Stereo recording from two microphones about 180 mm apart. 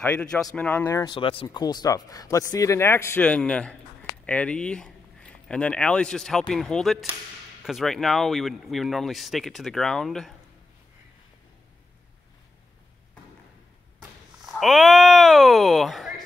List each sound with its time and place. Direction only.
0.0 s speech: 5° left (ahead or behind)
14.4 s speech: centre (ahead or behind)